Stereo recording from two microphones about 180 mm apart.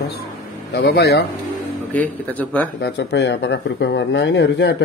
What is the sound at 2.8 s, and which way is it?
Speech, 65° left (ahead or behind).